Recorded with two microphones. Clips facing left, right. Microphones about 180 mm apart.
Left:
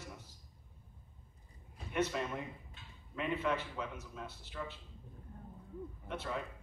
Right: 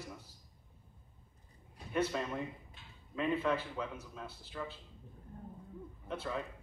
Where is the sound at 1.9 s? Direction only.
30° right (ahead or behind).